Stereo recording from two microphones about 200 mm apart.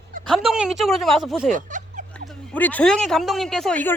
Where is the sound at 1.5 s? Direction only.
40° right (ahead or behind).